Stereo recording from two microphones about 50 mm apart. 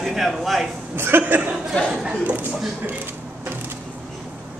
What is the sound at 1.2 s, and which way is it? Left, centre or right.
Speech, right.